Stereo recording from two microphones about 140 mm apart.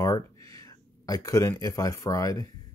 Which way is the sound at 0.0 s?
25° left (ahead or behind).